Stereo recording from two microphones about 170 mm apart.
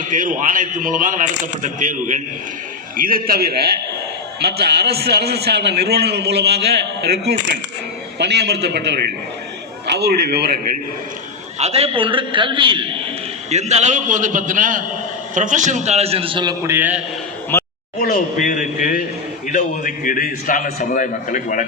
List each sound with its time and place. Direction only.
0.1 s a man's voice: 50° right (ahead or behind)
3.0 s a man's voice: 60° right (ahead or behind)
11.6 s a man's voice: 35° right (ahead or behind)
13.5 s a man's voice: 40° right (ahead or behind)
16.6 s a man's voice: 10° right (ahead or behind)
17.5 s a sound: 15° left (ahead or behind)
18.0 s a man's voice: 50° left (ahead or behind)